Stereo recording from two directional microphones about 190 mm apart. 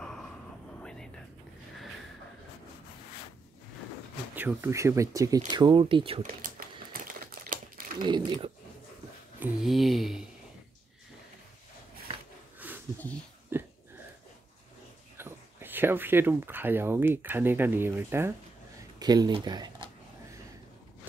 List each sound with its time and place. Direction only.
0.7 s whispering: 5° left (ahead or behind)
4.4 s speech: 10° right (ahead or behind); by 6.2 s 30° right (ahead or behind)
6.4 s crumpling: 50° right (ahead or behind)
8.0 s speech: 25° right (ahead or behind)
9.4 s speech: centre (ahead or behind)
12.5 s a sound: 10° right (ahead or behind)
15.1 s speech: 10° right (ahead or behind)